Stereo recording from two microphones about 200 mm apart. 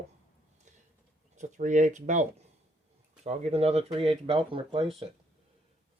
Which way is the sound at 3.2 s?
30° right (ahead or behind).